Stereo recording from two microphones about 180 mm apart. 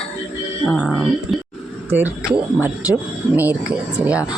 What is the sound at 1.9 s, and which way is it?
Speech, 10° right (ahead or behind).